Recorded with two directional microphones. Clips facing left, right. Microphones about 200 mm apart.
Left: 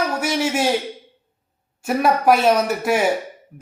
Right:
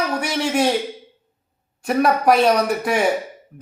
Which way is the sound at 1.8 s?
5° left (ahead or behind).